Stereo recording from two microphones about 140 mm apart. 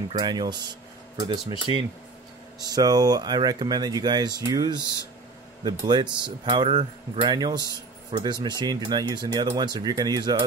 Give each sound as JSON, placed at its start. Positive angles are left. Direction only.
{"t": 0.2, "sound": "speech", "side_deg": -30}